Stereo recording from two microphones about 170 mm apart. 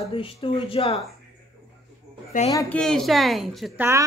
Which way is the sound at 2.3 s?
50° left (ahead or behind).